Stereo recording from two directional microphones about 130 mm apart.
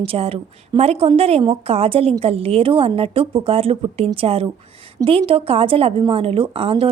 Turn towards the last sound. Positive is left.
turn(degrees=-45)  # may be behind; listen again after turning